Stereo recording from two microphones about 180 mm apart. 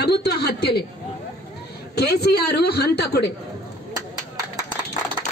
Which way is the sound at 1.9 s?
65° left (ahead or behind).